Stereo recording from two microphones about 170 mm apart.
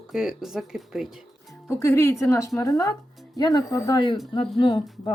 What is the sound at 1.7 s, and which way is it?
Speech, 15° left (ahead or behind).